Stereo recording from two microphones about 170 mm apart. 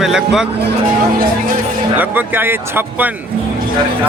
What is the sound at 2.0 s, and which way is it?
Speech, 10° right (ahead or behind).